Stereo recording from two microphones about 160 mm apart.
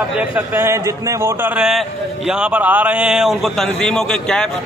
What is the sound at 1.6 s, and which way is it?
A man's voice, 5° right (ahead or behind).